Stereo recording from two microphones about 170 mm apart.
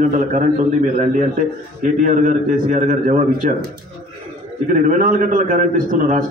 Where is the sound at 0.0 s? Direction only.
45° right (ahead or behind).